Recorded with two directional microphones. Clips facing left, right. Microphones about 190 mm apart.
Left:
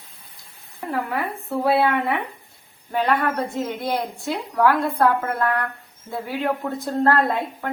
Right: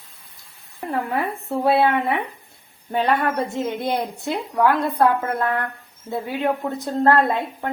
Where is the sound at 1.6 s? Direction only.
25° right (ahead or behind).